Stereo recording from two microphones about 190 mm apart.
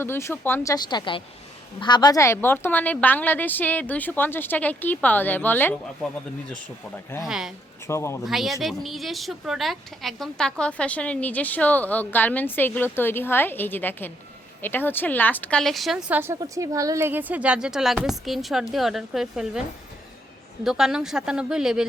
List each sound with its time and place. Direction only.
0.0 s a woman's voice: 15° left (ahead or behind)
7.2 s a woman's voice: centre (ahead or behind)
7.9 s a woman's voice: 15° left (ahead or behind)
8.2 s a woman's voice: centre (ahead or behind)
20.7 s a woman's voice: 5° right (ahead or behind)